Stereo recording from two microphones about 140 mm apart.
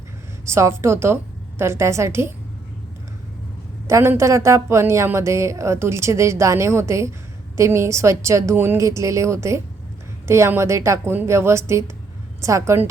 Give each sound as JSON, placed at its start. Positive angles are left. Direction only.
{"t": 0.4, "sound": "a woman's voice", "side_deg": -20}
{"t": 3.8, "sound": "a woman's voice", "side_deg": -20}